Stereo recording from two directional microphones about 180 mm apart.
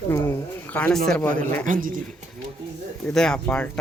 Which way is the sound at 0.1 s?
10° left (ahead or behind).